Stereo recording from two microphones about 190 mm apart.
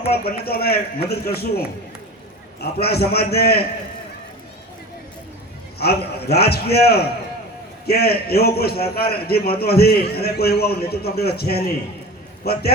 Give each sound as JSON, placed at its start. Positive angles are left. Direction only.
{"t": 0.1, "sound": "a man's voice", "side_deg": 55}
{"t": 2.8, "sound": "a man's voice", "side_deg": 55}
{"t": 5.8, "sound": "a man's voice", "side_deg": 55}